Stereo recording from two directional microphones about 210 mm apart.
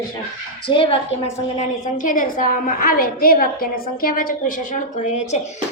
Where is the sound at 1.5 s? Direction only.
40° left (ahead or behind).